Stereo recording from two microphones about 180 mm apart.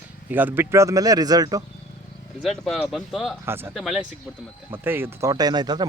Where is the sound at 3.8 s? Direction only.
Centre (ahead or behind).